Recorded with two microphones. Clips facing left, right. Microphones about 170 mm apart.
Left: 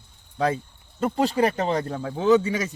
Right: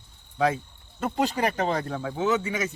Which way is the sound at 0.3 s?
35° left (ahead or behind).